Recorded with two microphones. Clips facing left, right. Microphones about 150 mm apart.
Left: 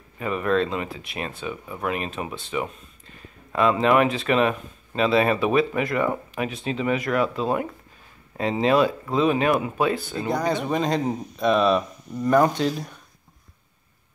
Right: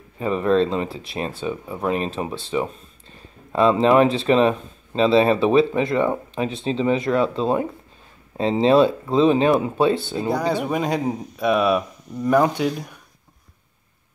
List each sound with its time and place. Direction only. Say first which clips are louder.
0.2 s speech: right 4 dB; 30° right (ahead or behind)
10.1 s speech: right 2 dB; 10° right (ahead or behind)